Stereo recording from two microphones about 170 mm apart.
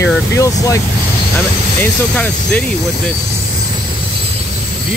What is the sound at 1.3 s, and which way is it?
Speech, 10° left (ahead or behind).